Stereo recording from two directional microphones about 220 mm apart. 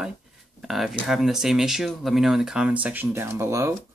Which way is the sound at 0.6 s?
Centre (ahead or behind).